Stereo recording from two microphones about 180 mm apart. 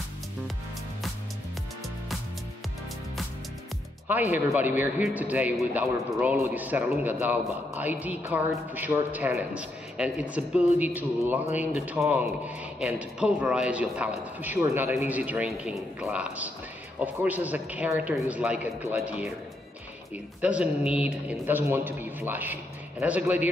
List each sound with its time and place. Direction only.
4.1 s speech: 10° right (ahead or behind)
20.4 s speech: 5° right (ahead or behind)